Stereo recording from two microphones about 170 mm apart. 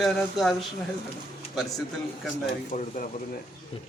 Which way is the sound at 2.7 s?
45° left (ahead or behind).